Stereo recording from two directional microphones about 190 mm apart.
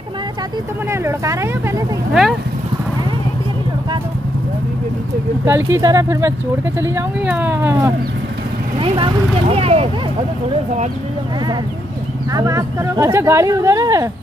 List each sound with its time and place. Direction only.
1.0 s speech: 15° right (ahead or behind)
5.4 s speech: 10° right (ahead or behind)
8.7 s speech: 25° right (ahead or behind)
12.3 s speech: 15° right (ahead or behind)